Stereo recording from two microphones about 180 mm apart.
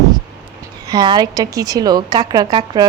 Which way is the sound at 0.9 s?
25° right (ahead or behind).